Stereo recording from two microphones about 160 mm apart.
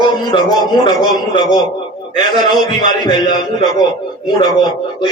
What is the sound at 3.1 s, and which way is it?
A man's voice, 25° left (ahead or behind).